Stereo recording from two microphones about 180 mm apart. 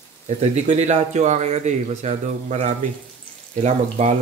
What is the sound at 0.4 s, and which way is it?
Speech, 40° right (ahead or behind).